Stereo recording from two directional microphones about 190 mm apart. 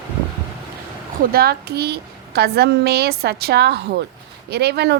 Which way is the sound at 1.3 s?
55° right (ahead or behind).